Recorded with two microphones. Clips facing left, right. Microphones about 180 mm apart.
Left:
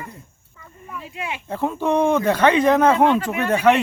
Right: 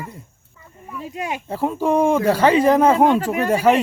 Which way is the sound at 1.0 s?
40° right (ahead or behind).